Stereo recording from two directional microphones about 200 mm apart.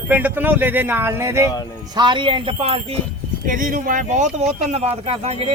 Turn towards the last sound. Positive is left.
turn(degrees=-30)  # may be behind; listen again after turning